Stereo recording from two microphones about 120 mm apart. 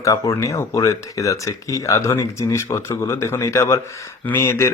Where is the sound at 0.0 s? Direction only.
25° left (ahead or behind).